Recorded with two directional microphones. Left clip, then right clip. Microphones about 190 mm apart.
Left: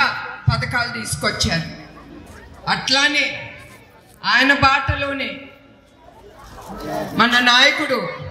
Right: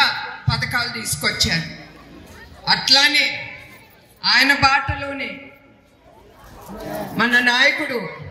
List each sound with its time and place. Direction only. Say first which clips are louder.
0.0 s a sound: right 1 dB; 40° left (ahead or behind)
2.6 s a man's voice: right 2 dB; 40° left (ahead or behind)
7.2 s a man's voice: left 2 dB; 50° left (ahead or behind)